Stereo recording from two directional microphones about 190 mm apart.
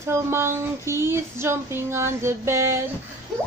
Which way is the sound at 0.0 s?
15° right (ahead or behind).